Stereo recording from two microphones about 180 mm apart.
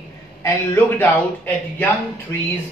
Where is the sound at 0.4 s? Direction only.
10° left (ahead or behind).